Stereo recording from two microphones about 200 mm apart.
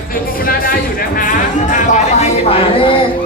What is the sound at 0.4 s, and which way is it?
Music, 45° left (ahead or behind).